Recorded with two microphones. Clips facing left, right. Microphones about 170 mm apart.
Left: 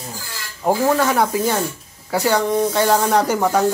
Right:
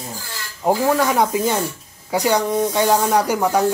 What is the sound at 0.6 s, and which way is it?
Speech, 5° right (ahead or behind).